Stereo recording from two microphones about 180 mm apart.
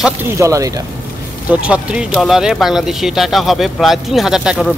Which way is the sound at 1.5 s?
5° right (ahead or behind).